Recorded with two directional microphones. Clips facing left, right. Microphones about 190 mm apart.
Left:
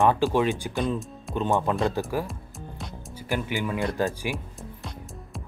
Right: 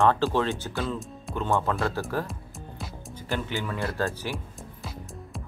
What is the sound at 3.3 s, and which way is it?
Speech, 15° left (ahead or behind).